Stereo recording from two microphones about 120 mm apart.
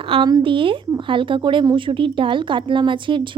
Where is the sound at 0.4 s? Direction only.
45° right (ahead or behind).